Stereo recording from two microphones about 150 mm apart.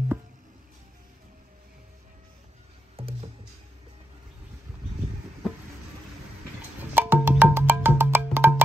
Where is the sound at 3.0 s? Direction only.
40° right (ahead or behind).